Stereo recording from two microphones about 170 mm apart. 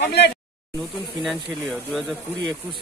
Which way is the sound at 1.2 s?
Centre (ahead or behind).